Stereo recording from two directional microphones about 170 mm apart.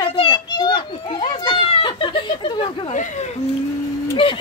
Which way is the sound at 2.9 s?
45° left (ahead or behind).